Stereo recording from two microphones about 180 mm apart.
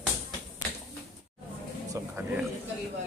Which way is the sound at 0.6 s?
20° left (ahead or behind).